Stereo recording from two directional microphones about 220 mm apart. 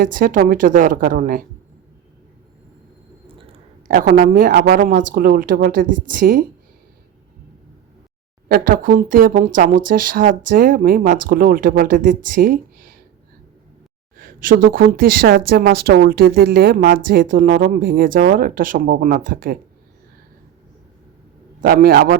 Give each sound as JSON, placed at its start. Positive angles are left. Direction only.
{"t": 0.0, "sound": "speech", "side_deg": -40}
{"t": 3.2, "sound": "a sound", "side_deg": -25}
{"t": 3.8, "sound": "speech", "side_deg": -40}
{"t": 8.4, "sound": "speech", "side_deg": -45}
{"t": 14.2, "sound": "speech", "side_deg": -40}
{"t": 21.6, "sound": "a man's voice", "side_deg": -40}